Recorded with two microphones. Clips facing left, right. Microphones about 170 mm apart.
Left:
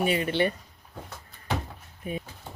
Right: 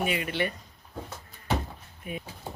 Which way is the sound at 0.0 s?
30° left (ahead or behind).